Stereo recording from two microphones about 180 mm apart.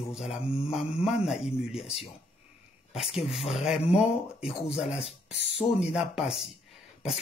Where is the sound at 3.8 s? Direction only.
35° left (ahead or behind).